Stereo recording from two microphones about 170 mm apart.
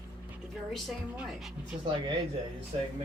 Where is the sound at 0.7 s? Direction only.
Centre (ahead or behind).